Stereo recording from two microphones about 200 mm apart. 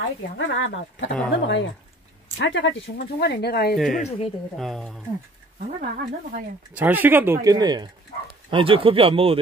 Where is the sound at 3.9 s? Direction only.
35° left (ahead or behind).